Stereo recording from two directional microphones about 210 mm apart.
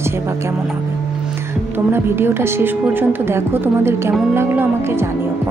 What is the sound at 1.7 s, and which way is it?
Speech, 10° right (ahead or behind).